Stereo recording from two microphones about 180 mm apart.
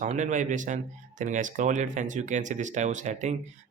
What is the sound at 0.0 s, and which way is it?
Speech, 45° right (ahead or behind).